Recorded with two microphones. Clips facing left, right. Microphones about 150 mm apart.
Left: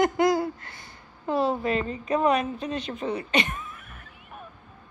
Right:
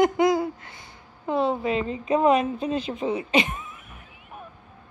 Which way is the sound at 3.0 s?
10° right (ahead or behind).